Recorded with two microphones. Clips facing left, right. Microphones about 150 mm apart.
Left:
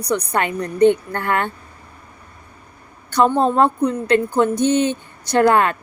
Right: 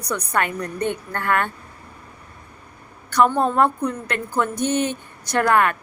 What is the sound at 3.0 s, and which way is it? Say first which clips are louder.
Speech: left 2 dB; 25° left (ahead or behind).